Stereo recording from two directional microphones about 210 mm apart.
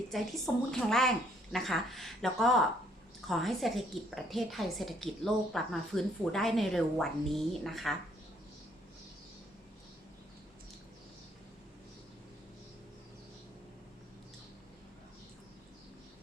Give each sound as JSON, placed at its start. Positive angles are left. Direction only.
{"t": 0.1, "sound": "a woman's voice", "side_deg": 0}